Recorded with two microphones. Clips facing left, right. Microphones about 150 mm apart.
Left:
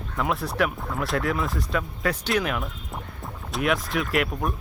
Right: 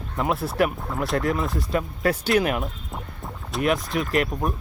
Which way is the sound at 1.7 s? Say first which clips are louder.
Right 5 dB; 45° right (ahead or behind).